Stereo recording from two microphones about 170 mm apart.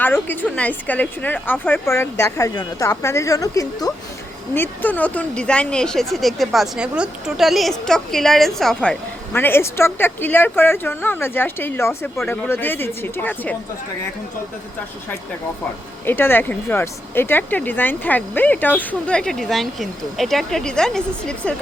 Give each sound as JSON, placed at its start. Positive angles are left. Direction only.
{"t": 0.0, "sound": "speech", "side_deg": 10}
{"t": 16.0, "sound": "speech", "side_deg": 10}